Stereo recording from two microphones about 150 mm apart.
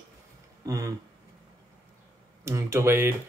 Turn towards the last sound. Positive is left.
turn(degrees=-15)  # may be behind; listen again after turning